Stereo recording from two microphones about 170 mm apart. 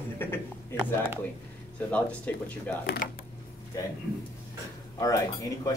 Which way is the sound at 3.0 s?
50° left (ahead or behind).